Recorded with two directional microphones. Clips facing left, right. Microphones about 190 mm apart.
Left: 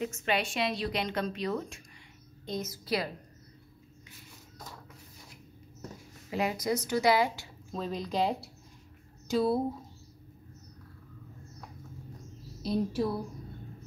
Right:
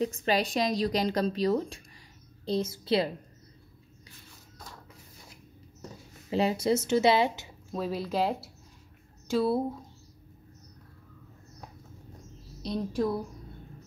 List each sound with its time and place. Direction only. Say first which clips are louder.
0.0 s a woman's voice: right 4 dB; 35° right (ahead or behind)
6.3 s a woman's voice: right 4 dB; 30° right (ahead or behind)
7.7 s speech: right 2 dB; 5° right (ahead or behind)
12.6 s speech: even; 5° left (ahead or behind)